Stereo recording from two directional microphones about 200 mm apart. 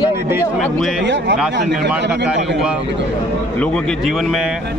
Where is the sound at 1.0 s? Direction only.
65° right (ahead or behind).